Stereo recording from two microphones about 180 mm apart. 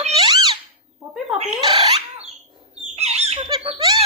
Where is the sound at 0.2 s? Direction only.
25° right (ahead or behind).